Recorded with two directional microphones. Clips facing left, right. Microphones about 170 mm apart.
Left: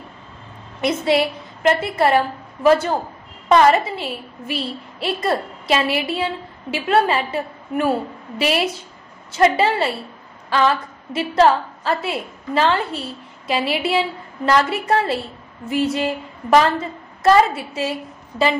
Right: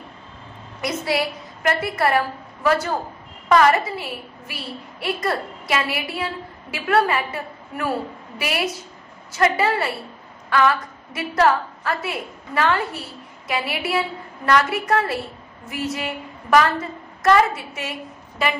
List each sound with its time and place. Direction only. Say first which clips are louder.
0.7 s a woman's voice: left 5 dB; 25° left (ahead or behind)